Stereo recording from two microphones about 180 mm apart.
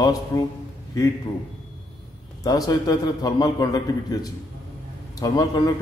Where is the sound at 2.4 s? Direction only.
20° left (ahead or behind).